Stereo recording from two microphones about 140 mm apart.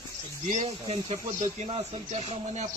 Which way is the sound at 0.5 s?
50° right (ahead or behind).